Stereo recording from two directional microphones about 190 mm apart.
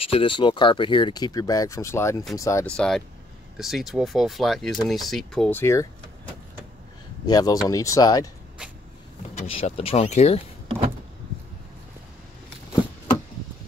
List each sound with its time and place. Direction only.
0.1 s speech: 25° left (ahead or behind)
2.7 s speech: 5° left (ahead or behind)
7.2 s speech: 20° left (ahead or behind)
9.6 s speech: 30° left (ahead or behind)